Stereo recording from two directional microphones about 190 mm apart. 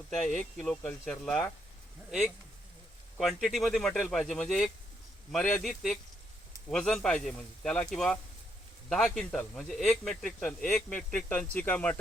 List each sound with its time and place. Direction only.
0.3 s speech: centre (ahead or behind)